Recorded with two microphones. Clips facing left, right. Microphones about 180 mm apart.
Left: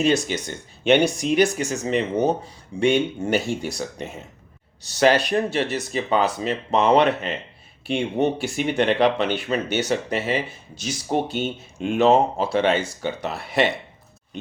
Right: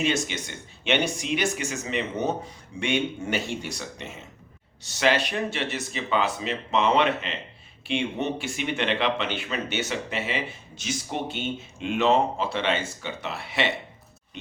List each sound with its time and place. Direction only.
0.0 s speech: 35° left (ahead or behind)